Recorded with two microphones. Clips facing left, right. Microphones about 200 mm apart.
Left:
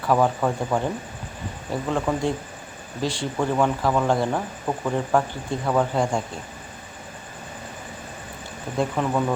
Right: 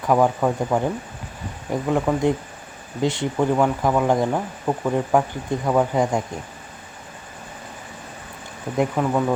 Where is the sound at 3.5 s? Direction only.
10° right (ahead or behind).